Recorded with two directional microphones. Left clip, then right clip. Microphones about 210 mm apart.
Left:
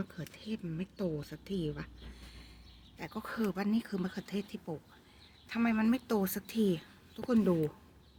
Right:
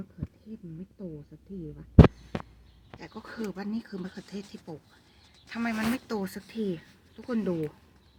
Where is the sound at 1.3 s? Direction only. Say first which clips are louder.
Left 5 dB; 20° left (ahead or behind).